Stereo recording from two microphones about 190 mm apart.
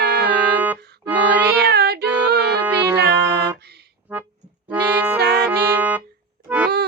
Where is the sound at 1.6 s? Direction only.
60° right (ahead or behind).